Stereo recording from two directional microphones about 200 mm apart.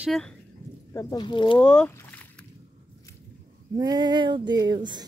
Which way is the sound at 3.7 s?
20° right (ahead or behind).